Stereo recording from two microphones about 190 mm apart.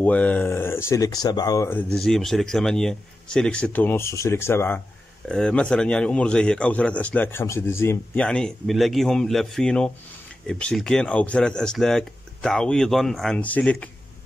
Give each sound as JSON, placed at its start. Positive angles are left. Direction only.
{"t": 0.0, "sound": "a man's voice", "side_deg": 10}